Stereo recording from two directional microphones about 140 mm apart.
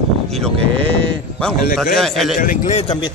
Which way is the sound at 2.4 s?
65° left (ahead or behind).